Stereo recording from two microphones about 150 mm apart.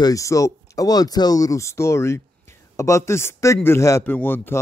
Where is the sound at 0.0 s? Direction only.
20° left (ahead or behind).